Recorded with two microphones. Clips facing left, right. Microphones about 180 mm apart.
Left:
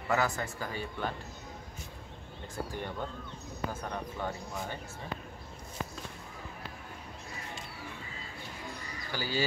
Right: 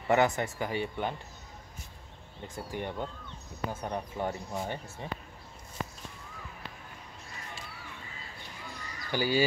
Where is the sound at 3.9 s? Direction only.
25° right (ahead or behind).